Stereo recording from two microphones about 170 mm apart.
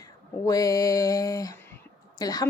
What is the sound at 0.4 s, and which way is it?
Speech, 20° left (ahead or behind).